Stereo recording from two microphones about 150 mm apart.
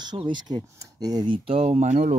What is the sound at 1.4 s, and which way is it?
Speech, 45° right (ahead or behind).